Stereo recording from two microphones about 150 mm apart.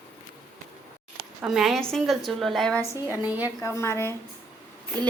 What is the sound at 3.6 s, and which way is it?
Speech, 20° left (ahead or behind).